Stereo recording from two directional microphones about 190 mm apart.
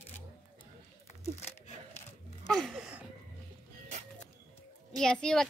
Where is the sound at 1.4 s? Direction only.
35° left (ahead or behind).